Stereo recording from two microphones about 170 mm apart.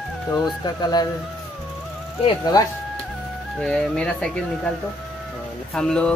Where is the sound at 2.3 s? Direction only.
25° left (ahead or behind).